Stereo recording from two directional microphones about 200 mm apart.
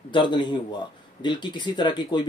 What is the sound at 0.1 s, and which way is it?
A man's voice, 25° left (ahead or behind).